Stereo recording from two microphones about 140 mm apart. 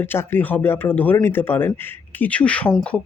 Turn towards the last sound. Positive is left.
turn(degrees=10)  # may be behind; listen again after turning